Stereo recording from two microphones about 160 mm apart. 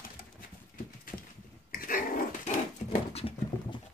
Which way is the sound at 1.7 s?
65° left (ahead or behind).